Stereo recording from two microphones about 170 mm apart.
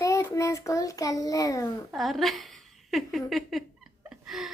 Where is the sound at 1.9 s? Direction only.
Centre (ahead or behind).